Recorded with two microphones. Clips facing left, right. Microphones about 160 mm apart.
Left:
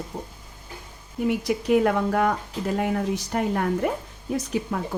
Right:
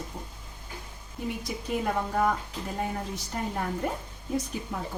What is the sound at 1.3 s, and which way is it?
Speech, 80° left.